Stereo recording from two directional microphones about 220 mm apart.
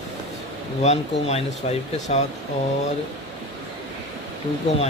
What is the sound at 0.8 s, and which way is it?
Speech, 30° left (ahead or behind).